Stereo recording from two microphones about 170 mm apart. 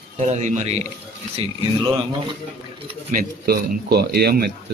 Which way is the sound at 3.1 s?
60° right (ahead or behind).